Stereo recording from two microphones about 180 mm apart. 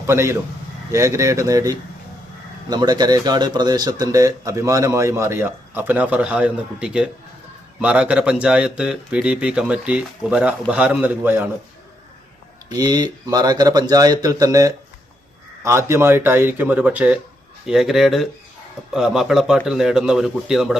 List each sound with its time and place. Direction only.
0.1 s speech: 15° right (ahead or behind)
12.7 s a man's voice: 20° right (ahead or behind); by 20.7 s 5° right (ahead or behind)